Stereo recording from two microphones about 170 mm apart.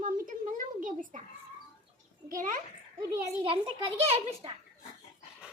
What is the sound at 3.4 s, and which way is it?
A child's voice, 30° right (ahead or behind).